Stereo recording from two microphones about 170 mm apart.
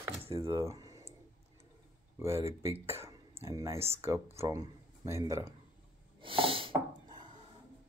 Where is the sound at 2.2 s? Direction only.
15° right (ahead or behind).